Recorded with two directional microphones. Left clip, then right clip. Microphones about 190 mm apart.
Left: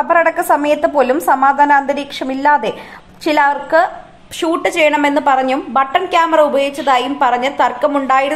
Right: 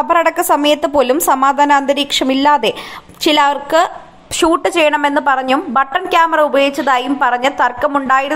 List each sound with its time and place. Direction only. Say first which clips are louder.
0.1 s a woman's voice: left 1 dB; 25° right (ahead or behind)